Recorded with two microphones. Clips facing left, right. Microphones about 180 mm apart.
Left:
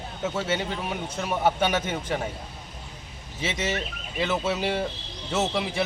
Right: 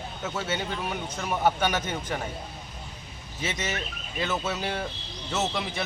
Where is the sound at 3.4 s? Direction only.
30° left (ahead or behind).